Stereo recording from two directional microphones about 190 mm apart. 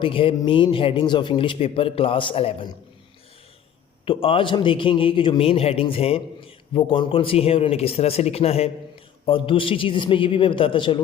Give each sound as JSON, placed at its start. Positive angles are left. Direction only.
{"t": 0.0, "sound": "a man's voice", "side_deg": 30}
{"t": 4.0, "sound": "a man's voice", "side_deg": 30}